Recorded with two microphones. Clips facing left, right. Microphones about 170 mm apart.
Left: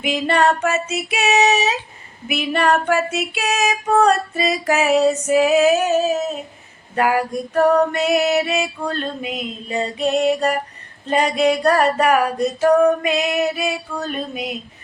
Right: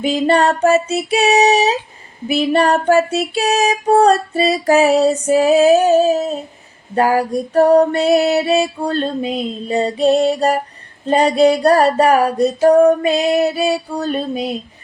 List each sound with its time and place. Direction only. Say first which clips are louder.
0.0 s female singing: right 4 dB; 35° right (ahead or behind)